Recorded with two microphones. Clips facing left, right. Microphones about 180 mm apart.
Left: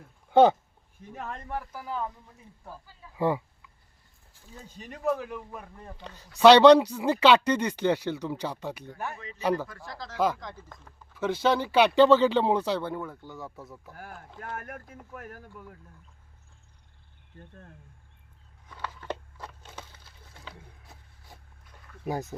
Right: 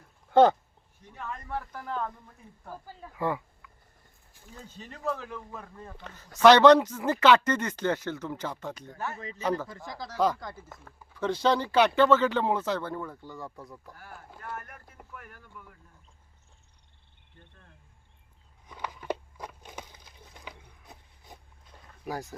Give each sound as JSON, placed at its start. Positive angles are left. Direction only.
{"t": 0.3, "sound": "speech", "side_deg": 10}
{"t": 1.1, "sound": "speech", "side_deg": 40}
{"t": 1.5, "sound": "a man's voice", "side_deg": 10}
{"t": 3.2, "sound": "a man's voice", "side_deg": 15}
{"t": 9.6, "sound": "speech", "side_deg": -20}
{"t": 10.2, "sound": "speech", "side_deg": 5}
{"t": 10.4, "sound": "speech", "side_deg": -5}
{"t": 11.1, "sound": "a man's voice", "side_deg": 5}
{"t": 12.0, "sound": "speech", "side_deg": 25}
{"t": 12.9, "sound": "speech", "side_deg": 5}
{"t": 14.5, "sound": "speech", "side_deg": 50}
{"t": 17.4, "sound": "speech", "side_deg": 45}
{"t": 18.7, "sound": "a sound", "side_deg": -15}
{"t": 22.0, "sound": "speech", "side_deg": 20}